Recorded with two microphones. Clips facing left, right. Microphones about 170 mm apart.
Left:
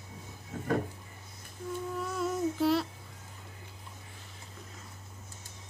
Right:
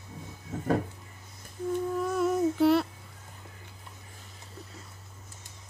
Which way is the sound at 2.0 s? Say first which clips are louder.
Right 5 dB; 60° right (ahead or behind).